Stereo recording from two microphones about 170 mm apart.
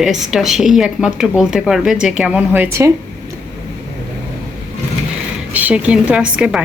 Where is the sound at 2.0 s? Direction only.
5° right (ahead or behind).